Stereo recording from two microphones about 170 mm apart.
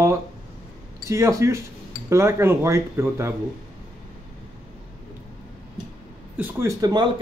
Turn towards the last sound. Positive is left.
turn(degrees=-25)  # may be behind; listen again after turning